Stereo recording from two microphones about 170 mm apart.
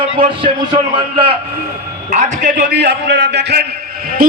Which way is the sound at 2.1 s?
45° right (ahead or behind).